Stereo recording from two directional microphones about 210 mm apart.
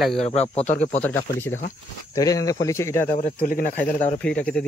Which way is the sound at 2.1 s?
15° left (ahead or behind).